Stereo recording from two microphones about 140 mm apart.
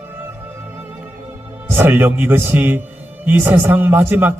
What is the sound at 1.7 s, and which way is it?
A man's voice, 15° right (ahead or behind).